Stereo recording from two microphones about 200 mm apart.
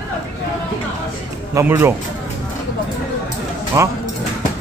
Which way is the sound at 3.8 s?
15° right (ahead or behind).